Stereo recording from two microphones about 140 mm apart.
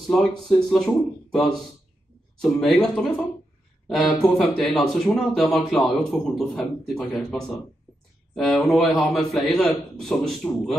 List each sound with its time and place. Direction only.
0.1 s a man's voice: 5° left (ahead or behind)